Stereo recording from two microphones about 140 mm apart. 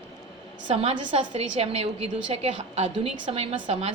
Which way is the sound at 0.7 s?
50° right (ahead or behind).